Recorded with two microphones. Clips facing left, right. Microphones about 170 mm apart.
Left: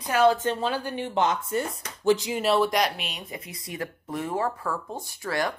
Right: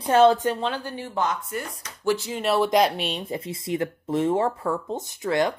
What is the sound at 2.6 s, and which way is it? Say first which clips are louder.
Speech: right 4 dB; 25° right (ahead or behind).